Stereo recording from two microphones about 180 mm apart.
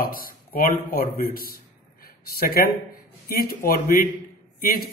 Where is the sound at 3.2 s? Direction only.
55° left (ahead or behind).